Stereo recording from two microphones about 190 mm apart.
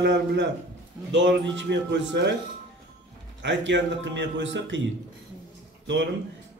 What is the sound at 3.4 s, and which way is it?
Speech, 70° right (ahead or behind).